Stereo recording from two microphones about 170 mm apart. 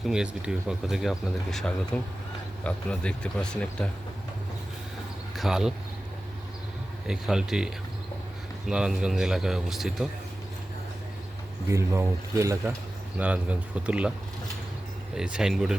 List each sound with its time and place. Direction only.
0.0 s speech: 5° right (ahead or behind)
5.4 s speech: 5° right (ahead or behind)
7.1 s speech: 5° right (ahead or behind)
11.7 s speech: 15° right (ahead or behind)
15.1 s speech: 5° right (ahead or behind)